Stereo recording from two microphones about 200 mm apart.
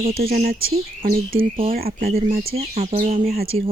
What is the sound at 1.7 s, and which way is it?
Speech, 45° right (ahead or behind).